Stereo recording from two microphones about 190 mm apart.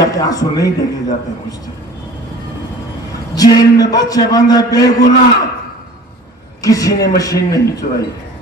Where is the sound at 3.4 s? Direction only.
20° left (ahead or behind).